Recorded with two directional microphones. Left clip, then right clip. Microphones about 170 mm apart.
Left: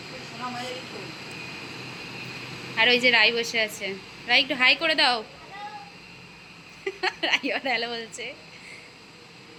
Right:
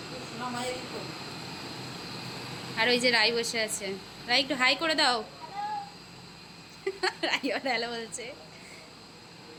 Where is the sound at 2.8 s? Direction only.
Centre (ahead or behind).